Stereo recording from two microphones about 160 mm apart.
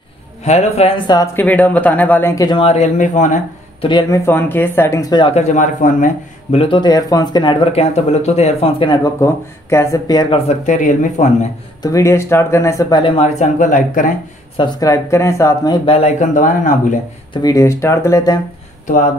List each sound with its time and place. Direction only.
0.4 s speech: 45° left (ahead or behind); by 2.6 s 25° left (ahead or behind)
2.6 s speech: 45° left (ahead or behind)
4.1 s speech: 15° left (ahead or behind)
5.2 s speech: 45° left (ahead or behind)
6.5 s speech: 35° left (ahead or behind)
10.3 s speech: 40° left (ahead or behind)
11.8 s speech: 20° left (ahead or behind)
13.0 s speech: 40° left (ahead or behind)
14.6 s speech: 20° left (ahead or behind); by 17.0 s 55° left (ahead or behind)
17.3 s speech: 25° left (ahead or behind)